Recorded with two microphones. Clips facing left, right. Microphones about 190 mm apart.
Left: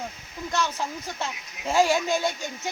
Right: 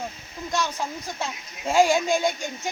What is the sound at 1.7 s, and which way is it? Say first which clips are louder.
Speech: right 2 dB; 15° right (ahead or behind).